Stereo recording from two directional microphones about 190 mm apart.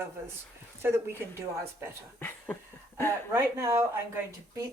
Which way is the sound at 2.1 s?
10° left (ahead or behind).